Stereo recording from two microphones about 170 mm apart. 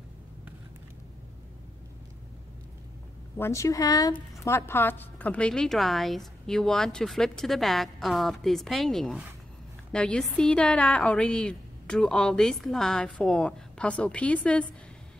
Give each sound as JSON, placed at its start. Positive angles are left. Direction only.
{"t": 3.3, "sound": "a woman's voice", "side_deg": 15}